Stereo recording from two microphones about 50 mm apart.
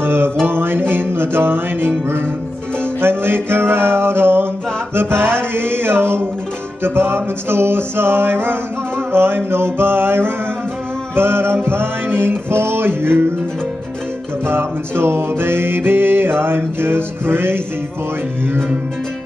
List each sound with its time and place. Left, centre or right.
0.0 s music: right
3.0 s music: right
4.9 s mantra: right
5.5 s a sound: right
6.8 s music: right
14.4 s music: right